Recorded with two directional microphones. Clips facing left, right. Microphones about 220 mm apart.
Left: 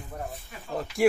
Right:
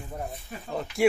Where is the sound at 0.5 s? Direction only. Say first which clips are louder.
Right 5 dB; 45° right (ahead or behind).